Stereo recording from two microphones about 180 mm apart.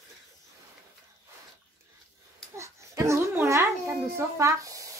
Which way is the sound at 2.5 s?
15° right (ahead or behind).